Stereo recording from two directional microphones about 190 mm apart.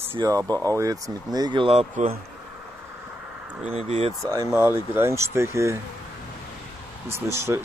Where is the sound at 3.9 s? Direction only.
35° right (ahead or behind).